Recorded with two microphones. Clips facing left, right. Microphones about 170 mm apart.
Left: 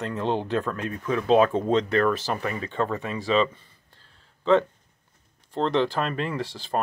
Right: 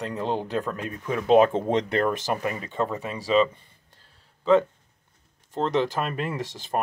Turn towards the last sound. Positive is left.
turn(degrees=-45)  # may be behind; listen again after turning